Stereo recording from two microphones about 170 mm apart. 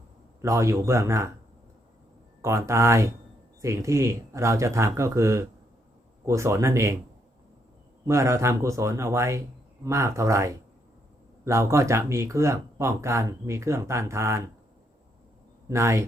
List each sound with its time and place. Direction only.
0.4 s speech: 20° right (ahead or behind)
2.4 s speech: 15° right (ahead or behind)
8.0 s speech: 15° right (ahead or behind)
15.7 s speech: 15° right (ahead or behind)